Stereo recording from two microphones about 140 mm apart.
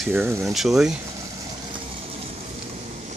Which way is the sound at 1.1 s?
25° right (ahead or behind).